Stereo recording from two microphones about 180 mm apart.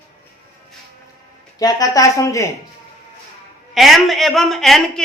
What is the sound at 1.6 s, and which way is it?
Speech, 20° left (ahead or behind).